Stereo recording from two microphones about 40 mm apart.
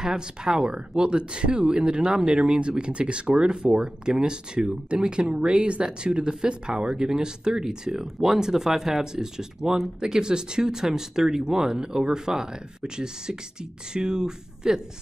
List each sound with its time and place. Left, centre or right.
0.0 s speech: centre